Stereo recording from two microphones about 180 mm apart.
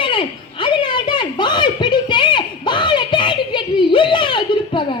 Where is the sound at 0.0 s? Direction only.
25° left (ahead or behind).